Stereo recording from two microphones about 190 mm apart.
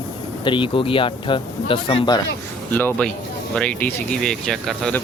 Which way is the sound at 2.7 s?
5° left (ahead or behind).